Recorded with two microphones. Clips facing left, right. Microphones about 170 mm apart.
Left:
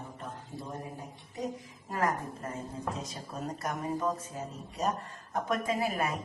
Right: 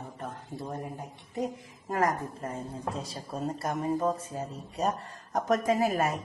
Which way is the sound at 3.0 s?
30° right (ahead or behind).